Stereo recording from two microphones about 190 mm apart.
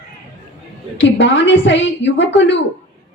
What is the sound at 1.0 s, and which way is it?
Speech, 70° left (ahead or behind).